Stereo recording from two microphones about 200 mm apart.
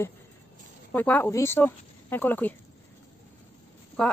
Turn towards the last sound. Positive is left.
turn(degrees=5)  # may be behind; listen again after turning